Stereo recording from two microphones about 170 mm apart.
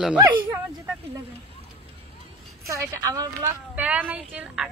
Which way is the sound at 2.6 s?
15° right (ahead or behind).